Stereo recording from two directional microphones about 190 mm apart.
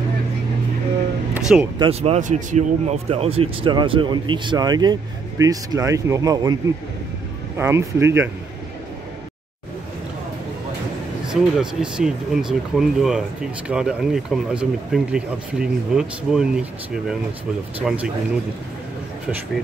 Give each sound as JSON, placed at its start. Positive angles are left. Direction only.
{"t": 1.3, "sound": "music", "side_deg": -10}
{"t": 1.8, "sound": "speech", "side_deg": -30}
{"t": 7.5, "sound": "speech", "side_deg": -15}
{"t": 11.2, "sound": "speech", "side_deg": -5}
{"t": 17.7, "sound": "speech", "side_deg": -5}